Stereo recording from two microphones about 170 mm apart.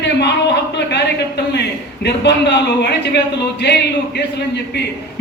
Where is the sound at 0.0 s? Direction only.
80° left.